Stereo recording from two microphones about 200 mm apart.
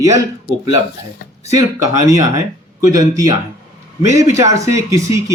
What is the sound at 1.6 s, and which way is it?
Speech, 15° right (ahead or behind).